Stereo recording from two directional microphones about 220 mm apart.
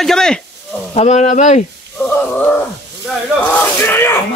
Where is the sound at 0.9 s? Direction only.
30° left (ahead or behind).